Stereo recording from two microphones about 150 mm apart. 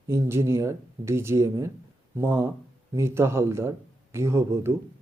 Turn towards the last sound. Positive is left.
turn(degrees=-15)  # may be behind; listen again after turning